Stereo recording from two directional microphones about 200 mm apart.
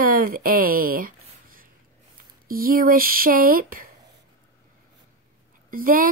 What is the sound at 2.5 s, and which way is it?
Speech, 45° right (ahead or behind).